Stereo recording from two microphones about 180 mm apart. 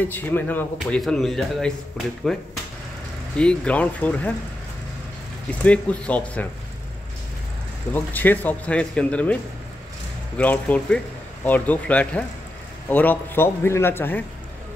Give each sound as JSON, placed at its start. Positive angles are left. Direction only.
{"t": 0.1, "sound": "speech", "side_deg": 10}
{"t": 5.6, "sound": "speech", "side_deg": 10}
{"t": 7.9, "sound": "speech", "side_deg": 10}